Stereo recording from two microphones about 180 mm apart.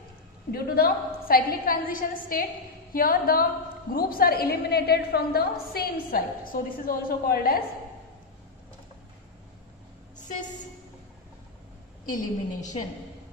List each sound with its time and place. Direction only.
0.5 s a woman's voice: 55° left (ahead or behind)
12.1 s a woman's voice: 20° left (ahead or behind)